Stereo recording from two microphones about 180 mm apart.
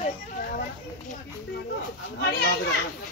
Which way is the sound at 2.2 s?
65° left (ahead or behind).